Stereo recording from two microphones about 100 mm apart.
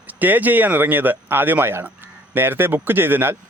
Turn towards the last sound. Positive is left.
turn(degrees=-20)  # may be behind; listen again after turning